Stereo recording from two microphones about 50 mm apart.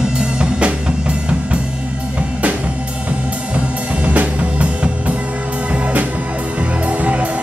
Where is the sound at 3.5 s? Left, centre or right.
Right.